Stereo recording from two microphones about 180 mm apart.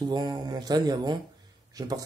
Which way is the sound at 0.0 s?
25° right (ahead or behind).